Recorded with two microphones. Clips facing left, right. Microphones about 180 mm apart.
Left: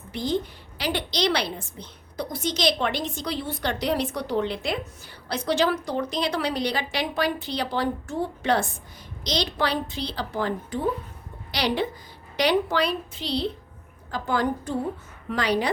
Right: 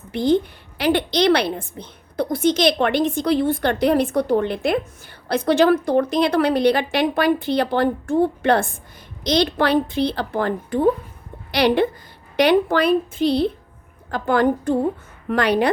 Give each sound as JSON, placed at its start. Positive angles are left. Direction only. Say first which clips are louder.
{"t": 0.1, "sound": "a woman's voice", "louder": "right 8 dB", "side_deg": -55}